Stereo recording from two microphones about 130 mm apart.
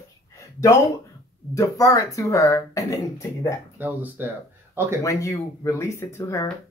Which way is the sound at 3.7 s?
15° right (ahead or behind).